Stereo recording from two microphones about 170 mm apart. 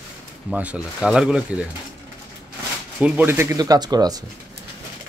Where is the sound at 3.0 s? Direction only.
10° right (ahead or behind).